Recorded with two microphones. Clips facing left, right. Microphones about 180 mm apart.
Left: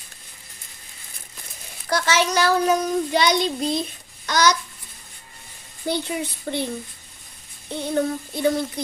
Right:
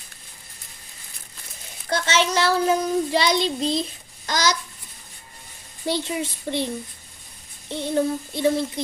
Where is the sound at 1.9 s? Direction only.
25° right (ahead or behind).